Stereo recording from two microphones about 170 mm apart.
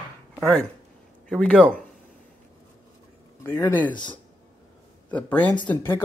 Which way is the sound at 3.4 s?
15° left (ahead or behind).